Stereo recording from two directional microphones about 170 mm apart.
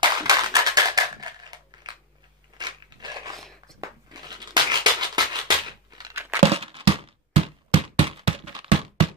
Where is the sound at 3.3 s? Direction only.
Centre (ahead or behind).